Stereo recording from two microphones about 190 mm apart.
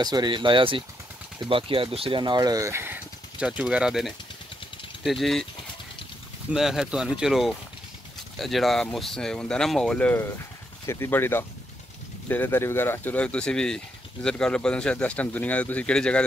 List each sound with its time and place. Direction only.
0.0 s speech: 20° right (ahead or behind); by 5.5 s centre (ahead or behind)
6.5 s speech: centre (ahead or behind)